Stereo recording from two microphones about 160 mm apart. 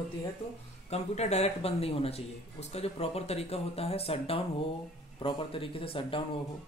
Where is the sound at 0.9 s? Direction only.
45° left (ahead or behind).